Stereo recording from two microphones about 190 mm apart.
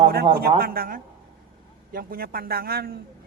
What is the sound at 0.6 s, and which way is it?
Speech, 50° right (ahead or behind).